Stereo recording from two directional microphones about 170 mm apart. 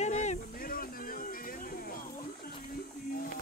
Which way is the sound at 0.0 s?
45° left (ahead or behind).